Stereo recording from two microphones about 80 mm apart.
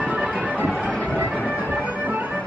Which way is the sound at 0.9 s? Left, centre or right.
Centre.